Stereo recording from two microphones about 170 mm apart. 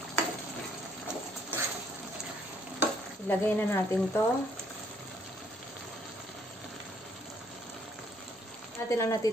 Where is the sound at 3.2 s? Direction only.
10° left (ahead or behind).